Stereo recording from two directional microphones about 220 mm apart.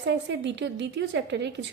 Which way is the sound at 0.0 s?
50° right (ahead or behind).